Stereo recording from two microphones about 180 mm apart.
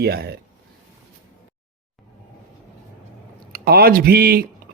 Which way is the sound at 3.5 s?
55° right (ahead or behind).